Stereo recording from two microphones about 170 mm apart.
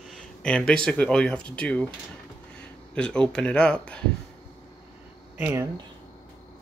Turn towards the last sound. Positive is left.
turn(degrees=-15)  # may be behind; listen again after turning